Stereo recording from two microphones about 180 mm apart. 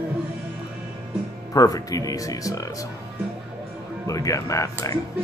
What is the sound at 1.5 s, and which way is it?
Speech, 20° left (ahead or behind).